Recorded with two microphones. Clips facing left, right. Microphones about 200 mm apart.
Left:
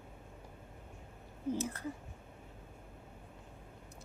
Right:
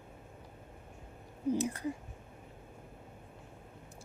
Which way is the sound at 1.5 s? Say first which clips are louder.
Right 5 dB; 15° right (ahead or behind).